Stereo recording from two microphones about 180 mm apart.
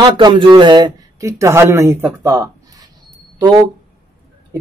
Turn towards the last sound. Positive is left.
turn(degrees=-20)  # may be behind; listen again after turning